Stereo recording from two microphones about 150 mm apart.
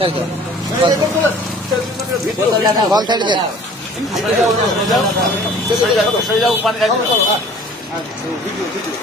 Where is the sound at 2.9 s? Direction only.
30° right (ahead or behind).